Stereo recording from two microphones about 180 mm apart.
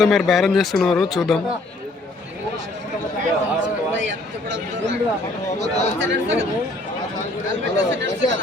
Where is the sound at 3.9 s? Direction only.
90° right.